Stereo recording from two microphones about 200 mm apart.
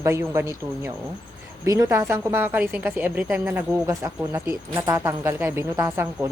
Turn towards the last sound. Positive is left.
turn(degrees=-15)  # may be behind; listen again after turning